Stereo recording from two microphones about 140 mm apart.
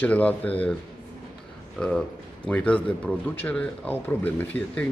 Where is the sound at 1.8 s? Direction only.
5° left (ahead or behind).